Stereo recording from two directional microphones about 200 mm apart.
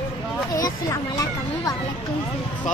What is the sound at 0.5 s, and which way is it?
A child's voice, 15° left (ahead or behind).